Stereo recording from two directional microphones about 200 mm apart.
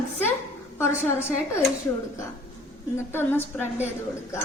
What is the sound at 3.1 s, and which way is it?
Speech, 10° left (ahead or behind).